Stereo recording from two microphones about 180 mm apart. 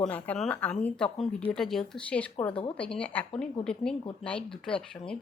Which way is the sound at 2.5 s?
30° left (ahead or behind).